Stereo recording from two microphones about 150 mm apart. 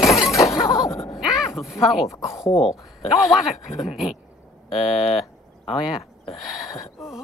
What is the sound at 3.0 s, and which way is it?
Speech, centre (ahead or behind).